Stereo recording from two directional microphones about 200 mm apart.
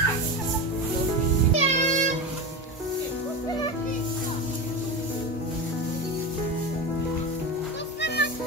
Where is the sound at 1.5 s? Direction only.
35° right (ahead or behind).